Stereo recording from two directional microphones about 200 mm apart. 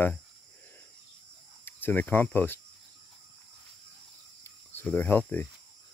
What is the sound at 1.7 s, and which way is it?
Speech, 10° left (ahead or behind).